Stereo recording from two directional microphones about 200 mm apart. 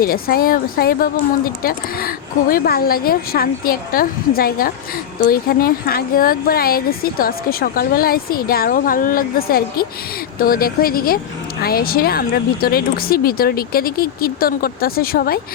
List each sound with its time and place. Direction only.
0.0 s speech: 45° left (ahead or behind)